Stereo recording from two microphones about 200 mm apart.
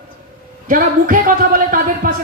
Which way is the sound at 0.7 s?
40° right (ahead or behind).